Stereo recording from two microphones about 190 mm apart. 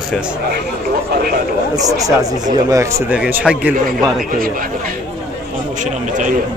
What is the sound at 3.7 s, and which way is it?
Speech, 45° right (ahead or behind).